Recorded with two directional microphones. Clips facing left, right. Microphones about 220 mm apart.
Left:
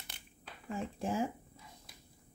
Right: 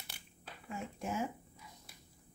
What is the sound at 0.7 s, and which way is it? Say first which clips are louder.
Speech: left 4 dB; 30° left (ahead or behind).